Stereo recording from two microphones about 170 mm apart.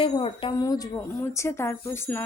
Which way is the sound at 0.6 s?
20° left (ahead or behind).